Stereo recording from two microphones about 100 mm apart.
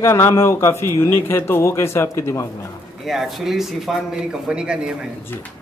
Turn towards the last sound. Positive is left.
turn(degrees=-10)  # may be behind; listen again after turning